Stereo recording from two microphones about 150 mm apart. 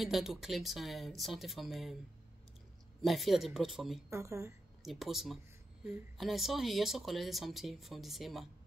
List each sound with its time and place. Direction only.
0.0 s speech: centre (ahead or behind)
3.0 s speech: centre (ahead or behind)
4.1 s speech: 20° right (ahead or behind)
4.8 s speech: centre (ahead or behind)